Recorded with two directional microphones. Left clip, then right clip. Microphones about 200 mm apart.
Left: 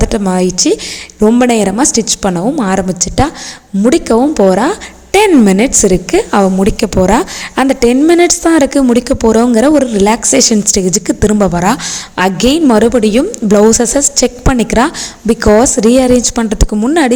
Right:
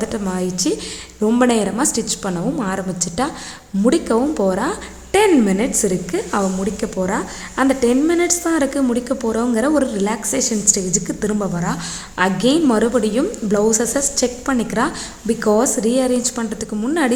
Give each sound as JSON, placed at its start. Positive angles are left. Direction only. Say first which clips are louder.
{"t": 0.0, "sound": "a woman's voice", "louder": "left 10 dB", "side_deg": 35}